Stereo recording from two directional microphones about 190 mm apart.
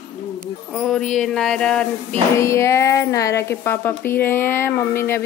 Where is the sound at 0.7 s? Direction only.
5° left (ahead or behind).